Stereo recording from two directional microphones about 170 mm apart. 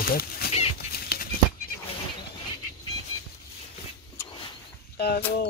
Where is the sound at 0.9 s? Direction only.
65° left (ahead or behind).